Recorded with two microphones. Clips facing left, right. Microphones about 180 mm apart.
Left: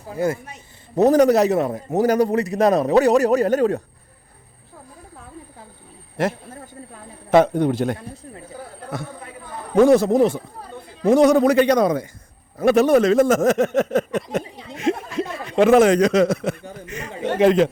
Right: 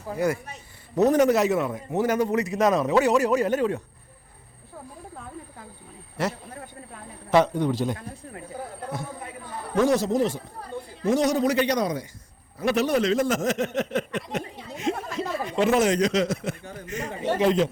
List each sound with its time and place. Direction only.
0.9 s a man's voice: 35° left (ahead or behind)
7.3 s speech: 55° left (ahead or behind)
9.7 s speech: 55° left (ahead or behind)
14.8 s speech: 75° left (ahead or behind)